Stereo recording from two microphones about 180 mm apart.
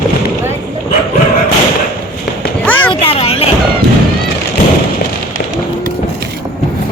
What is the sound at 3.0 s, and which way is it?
Vehicle, 35° left (ahead or behind).